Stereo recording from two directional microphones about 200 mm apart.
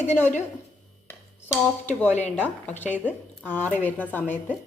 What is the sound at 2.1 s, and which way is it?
Speech, 35° left (ahead or behind).